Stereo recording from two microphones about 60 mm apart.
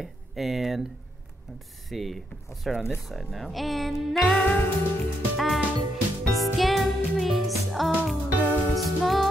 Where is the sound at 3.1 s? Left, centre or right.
Centre.